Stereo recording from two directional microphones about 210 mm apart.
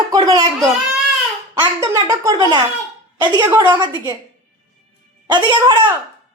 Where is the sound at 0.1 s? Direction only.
20° right (ahead or behind).